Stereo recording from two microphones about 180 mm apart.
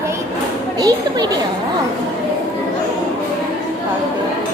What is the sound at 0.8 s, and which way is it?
Speech, 20° right (ahead or behind).